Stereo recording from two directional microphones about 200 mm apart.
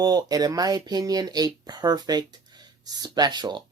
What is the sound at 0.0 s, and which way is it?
Speech, 20° right (ahead or behind).